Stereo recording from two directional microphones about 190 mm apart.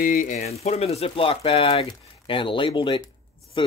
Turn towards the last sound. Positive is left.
turn(degrees=25)  # may be behind; listen again after turning